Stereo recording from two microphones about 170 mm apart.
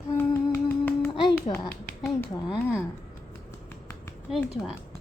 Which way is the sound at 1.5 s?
35° left (ahead or behind).